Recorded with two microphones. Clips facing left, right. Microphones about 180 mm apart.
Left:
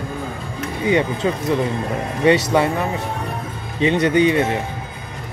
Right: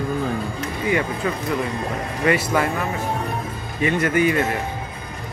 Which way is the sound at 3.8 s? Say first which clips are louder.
Left 4 dB; 20° left (ahead or behind).